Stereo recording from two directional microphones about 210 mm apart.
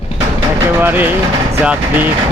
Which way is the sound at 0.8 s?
10° right (ahead or behind).